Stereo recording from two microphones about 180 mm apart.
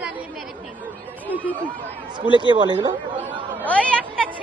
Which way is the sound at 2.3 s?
25° right (ahead or behind).